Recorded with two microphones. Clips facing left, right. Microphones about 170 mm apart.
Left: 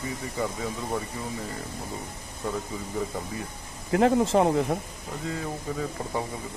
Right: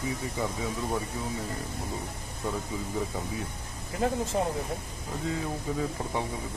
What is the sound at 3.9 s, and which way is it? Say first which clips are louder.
Speech: left 8 dB; 90° left.